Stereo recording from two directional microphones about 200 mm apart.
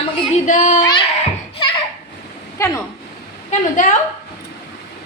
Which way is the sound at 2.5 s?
15° left (ahead or behind).